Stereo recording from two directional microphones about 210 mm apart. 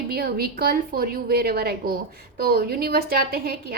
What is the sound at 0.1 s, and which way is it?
A woman's voice, 45° right (ahead or behind).